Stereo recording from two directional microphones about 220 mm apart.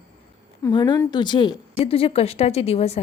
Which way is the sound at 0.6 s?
20° left (ahead or behind).